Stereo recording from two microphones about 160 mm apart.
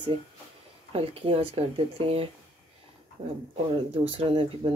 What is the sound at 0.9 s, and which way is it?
Speech, 35° right (ahead or behind).